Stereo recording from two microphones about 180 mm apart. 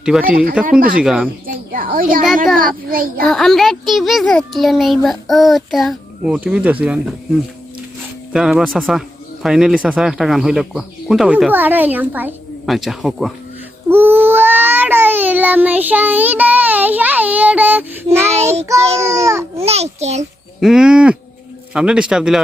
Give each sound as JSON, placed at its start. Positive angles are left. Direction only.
{"t": 0.0, "sound": "speech", "side_deg": -5}
{"t": 0.8, "sound": "a woman's voice", "side_deg": -50}
{"t": 1.0, "sound": "speech", "side_deg": 0}
{"t": 1.5, "sound": "a woman's voice", "side_deg": -50}
{"t": 2.2, "sound": "speech", "side_deg": 0}
{"t": 2.6, "sound": "a woman's voice", "side_deg": -50}
{"t": 3.2, "sound": "speech", "side_deg": 0}
{"t": 8.3, "sound": "speech", "side_deg": -5}
{"t": 13.9, "sound": "a sound", "side_deg": -10}
{"t": 18.6, "sound": "a child's voice", "side_deg": -15}
{"t": 19.5, "sound": "a child's voice", "side_deg": -35}
{"t": 20.6, "sound": "speech", "side_deg": -5}